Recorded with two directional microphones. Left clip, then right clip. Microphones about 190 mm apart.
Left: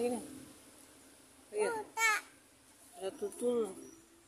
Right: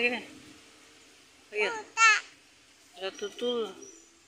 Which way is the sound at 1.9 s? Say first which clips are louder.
Right 12 dB; 35° left (ahead or behind).